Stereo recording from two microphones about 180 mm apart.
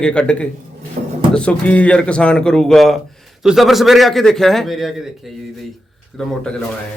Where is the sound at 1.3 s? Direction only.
5° left (ahead or behind).